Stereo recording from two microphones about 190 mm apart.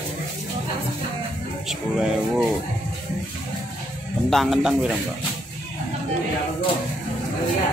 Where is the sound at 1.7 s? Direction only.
Centre (ahead or behind).